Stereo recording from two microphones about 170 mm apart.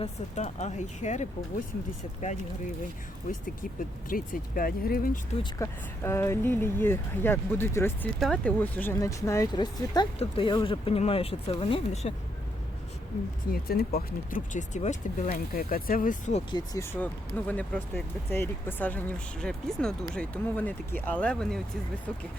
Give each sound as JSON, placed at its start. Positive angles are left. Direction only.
{"t": 0.0, "sound": "speech", "side_deg": 40}
{"t": 4.1, "sound": "speech", "side_deg": 55}
{"t": 5.4, "sound": "speech", "side_deg": 15}
{"t": 13.5, "sound": "speech", "side_deg": 65}
{"t": 15.5, "sound": "speech", "side_deg": 55}
{"t": 16.5, "sound": "speech", "side_deg": 25}
{"t": 16.8, "sound": "speech", "side_deg": 10}